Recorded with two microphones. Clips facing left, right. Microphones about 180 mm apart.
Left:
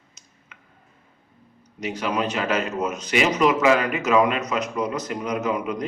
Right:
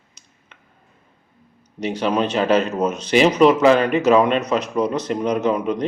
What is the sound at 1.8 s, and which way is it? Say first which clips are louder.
Speech: right 5 dB; 30° right (ahead or behind).